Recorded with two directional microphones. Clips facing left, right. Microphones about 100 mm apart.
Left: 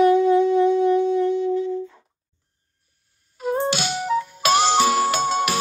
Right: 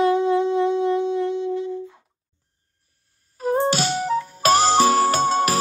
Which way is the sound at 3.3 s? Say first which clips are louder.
Right 2 dB; 40° right (ahead or behind).